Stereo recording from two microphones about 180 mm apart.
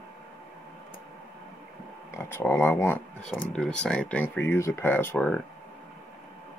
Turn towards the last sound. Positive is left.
turn(degrees=10)  # may be behind; listen again after turning